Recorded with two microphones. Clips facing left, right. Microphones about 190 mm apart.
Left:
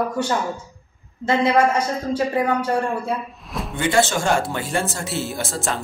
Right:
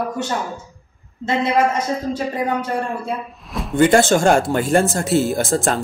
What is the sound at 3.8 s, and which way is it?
Speech, 50° right (ahead or behind).